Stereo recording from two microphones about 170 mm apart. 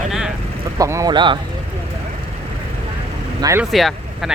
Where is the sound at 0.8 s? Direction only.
20° right (ahead or behind).